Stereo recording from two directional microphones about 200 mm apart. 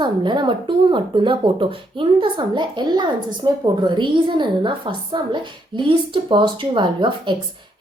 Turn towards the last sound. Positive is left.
turn(degrees=-25)  # may be behind; listen again after turning